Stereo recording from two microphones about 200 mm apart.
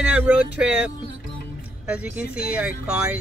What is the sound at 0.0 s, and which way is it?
Speech, 5° right (ahead or behind).